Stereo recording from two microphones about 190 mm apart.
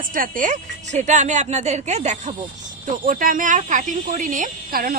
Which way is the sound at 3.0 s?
45° right (ahead or behind).